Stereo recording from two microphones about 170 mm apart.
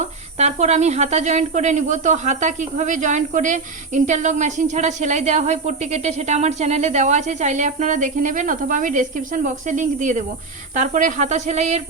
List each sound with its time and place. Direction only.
0.3 s speech: 40° right (ahead or behind)